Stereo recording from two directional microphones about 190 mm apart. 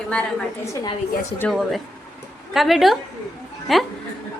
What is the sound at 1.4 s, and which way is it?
A woman's voice, centre (ahead or behind).